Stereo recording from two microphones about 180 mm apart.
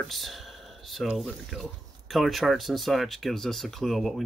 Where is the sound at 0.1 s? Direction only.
Centre (ahead or behind).